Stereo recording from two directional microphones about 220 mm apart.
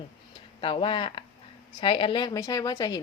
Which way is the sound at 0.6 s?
25° left (ahead or behind).